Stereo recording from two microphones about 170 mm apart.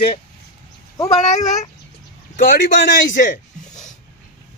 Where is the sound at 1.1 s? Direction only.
45° left (ahead or behind).